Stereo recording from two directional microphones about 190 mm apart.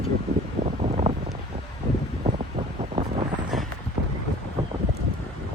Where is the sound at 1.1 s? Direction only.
35° right (ahead or behind).